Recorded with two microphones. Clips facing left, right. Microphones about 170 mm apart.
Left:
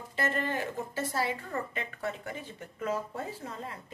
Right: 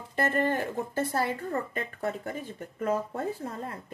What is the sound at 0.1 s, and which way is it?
Speech, 50° right (ahead or behind).